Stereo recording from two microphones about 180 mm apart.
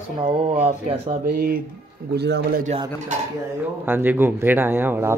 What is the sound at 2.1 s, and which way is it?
Speech, 65° right (ahead or behind).